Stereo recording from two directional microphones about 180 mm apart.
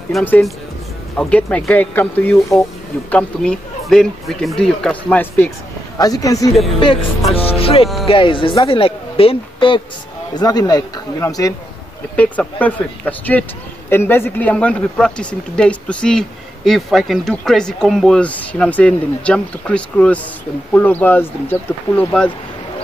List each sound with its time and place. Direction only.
0.1 s speech: 5° left (ahead or behind)
5.9 s a man's voice: 20° left (ahead or behind)